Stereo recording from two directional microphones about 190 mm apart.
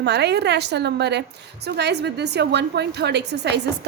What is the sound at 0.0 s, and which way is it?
A woman's voice, 60° right (ahead or behind).